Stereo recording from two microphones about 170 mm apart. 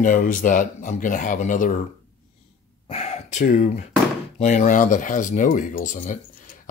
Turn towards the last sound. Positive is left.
turn(degrees=50)  # may be behind; listen again after turning